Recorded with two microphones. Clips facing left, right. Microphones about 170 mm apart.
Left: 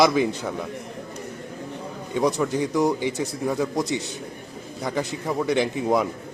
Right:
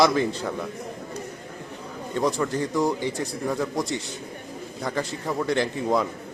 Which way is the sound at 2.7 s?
20° left (ahead or behind).